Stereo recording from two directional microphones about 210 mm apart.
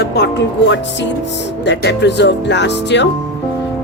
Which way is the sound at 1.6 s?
55° left (ahead or behind).